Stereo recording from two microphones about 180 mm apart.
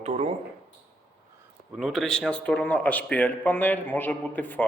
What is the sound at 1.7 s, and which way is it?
A man's voice, 5° right (ahead or behind).